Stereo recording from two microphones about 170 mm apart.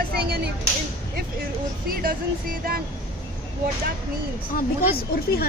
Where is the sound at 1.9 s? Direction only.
60° right (ahead or behind).